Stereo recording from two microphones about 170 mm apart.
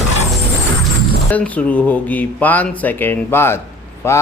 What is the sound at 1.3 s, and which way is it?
Speech, 10° left (ahead or behind).